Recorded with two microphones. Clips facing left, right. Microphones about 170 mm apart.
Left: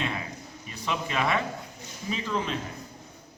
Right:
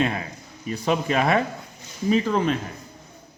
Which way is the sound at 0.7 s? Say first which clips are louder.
Right 8 dB; 45° right (ahead or behind).